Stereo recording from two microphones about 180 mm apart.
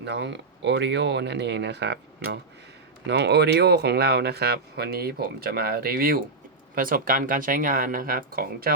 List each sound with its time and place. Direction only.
0.0 s speech: 70° right (ahead or behind); by 8.7 s 55° right (ahead or behind)